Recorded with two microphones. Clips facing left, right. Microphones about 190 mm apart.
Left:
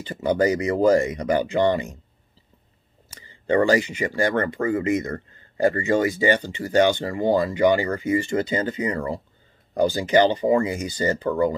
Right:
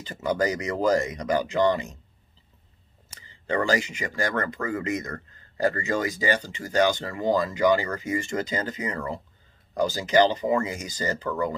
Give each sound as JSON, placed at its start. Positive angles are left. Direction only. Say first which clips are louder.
{"t": 0.0, "sound": "speech", "louder": "left 5 dB", "side_deg": 30}
{"t": 3.1, "sound": "speech", "louder": "left 7 dB", "side_deg": 30}